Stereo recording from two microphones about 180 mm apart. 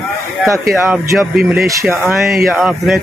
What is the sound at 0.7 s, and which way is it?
Speech, 10° right (ahead or behind).